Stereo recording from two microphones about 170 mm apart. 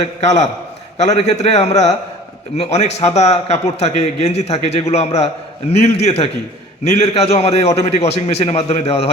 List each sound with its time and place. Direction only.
0.2 s a man's voice: 40° left (ahead or behind)